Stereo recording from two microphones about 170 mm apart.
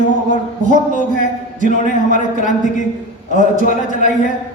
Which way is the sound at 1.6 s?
50° left (ahead or behind).